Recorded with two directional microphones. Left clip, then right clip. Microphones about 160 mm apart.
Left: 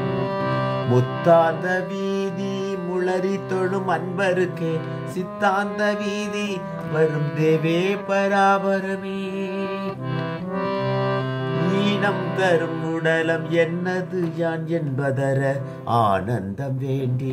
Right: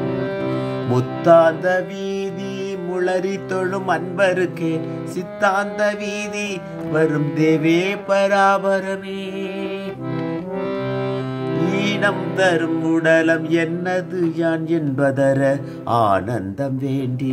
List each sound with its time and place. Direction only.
0.8 s music: 30° right (ahead or behind)
11.7 s music: 30° right (ahead or behind)